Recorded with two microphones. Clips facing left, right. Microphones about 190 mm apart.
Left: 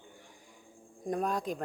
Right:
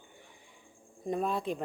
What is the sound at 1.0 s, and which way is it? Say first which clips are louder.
Speech: even; centre (ahead or behind).